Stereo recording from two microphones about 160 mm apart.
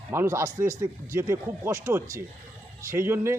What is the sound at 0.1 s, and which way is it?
Speech, 15° right (ahead or behind).